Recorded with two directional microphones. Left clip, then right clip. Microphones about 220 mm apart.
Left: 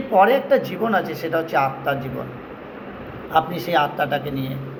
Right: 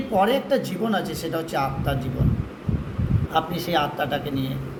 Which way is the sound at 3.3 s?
15° right (ahead or behind).